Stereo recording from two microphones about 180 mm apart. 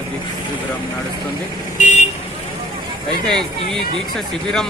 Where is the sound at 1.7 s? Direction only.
45° left (ahead or behind).